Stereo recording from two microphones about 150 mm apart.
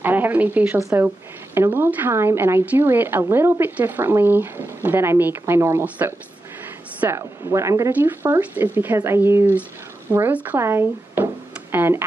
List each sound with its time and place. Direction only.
0.0 s a woman's voice: 10° right (ahead or behind)